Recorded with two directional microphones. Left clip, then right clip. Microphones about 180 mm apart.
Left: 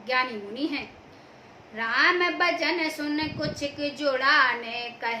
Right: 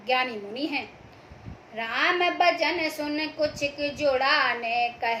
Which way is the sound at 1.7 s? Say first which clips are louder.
Left 2 dB; 15° left (ahead or behind).